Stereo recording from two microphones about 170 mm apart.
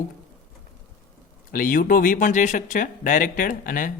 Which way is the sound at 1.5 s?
55° left (ahead or behind).